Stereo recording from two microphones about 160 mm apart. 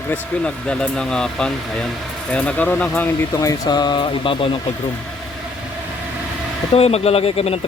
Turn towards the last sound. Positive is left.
turn(degrees=40)  # may be behind; listen again after turning